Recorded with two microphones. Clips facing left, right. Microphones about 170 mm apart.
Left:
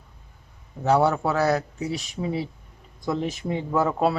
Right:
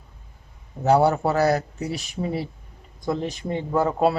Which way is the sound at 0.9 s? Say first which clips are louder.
Right 2 dB; 30° right (ahead or behind).